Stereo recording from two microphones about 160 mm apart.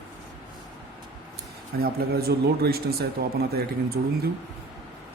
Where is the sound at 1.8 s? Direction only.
75° right (ahead or behind).